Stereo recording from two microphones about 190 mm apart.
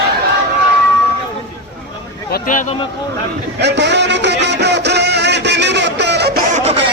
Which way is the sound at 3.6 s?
65° right (ahead or behind).